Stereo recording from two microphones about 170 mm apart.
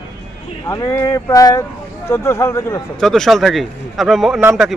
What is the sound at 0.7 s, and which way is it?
Speech, 15° left (ahead or behind).